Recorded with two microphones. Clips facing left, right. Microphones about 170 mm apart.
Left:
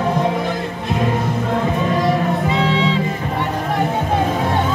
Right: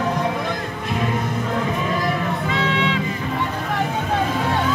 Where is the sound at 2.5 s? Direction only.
30° left (ahead or behind).